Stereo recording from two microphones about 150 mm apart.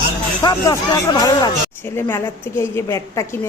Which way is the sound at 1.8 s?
15° left (ahead or behind).